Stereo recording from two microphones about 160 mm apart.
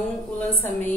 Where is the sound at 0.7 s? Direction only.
15° left (ahead or behind).